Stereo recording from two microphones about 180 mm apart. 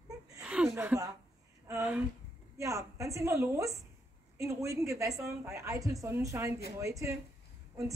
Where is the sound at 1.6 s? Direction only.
10° right (ahead or behind).